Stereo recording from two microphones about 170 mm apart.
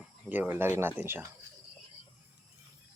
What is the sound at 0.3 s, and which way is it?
Speech, 10° right (ahead or behind).